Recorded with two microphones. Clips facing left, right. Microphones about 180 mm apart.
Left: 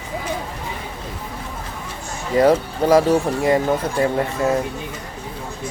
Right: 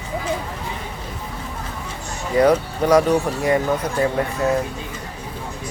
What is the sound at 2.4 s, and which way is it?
Speech, 30° left (ahead or behind).